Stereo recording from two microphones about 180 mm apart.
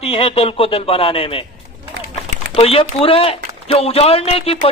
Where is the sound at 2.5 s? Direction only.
35° left (ahead or behind).